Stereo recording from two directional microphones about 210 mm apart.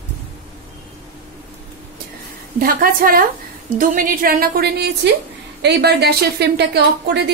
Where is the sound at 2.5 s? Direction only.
40° right (ahead or behind).